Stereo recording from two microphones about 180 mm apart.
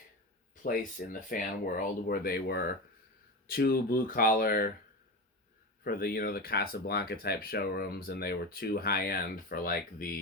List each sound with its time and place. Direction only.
0.6 s speech: 50° left (ahead or behind)
5.8 s speech: 55° left (ahead or behind)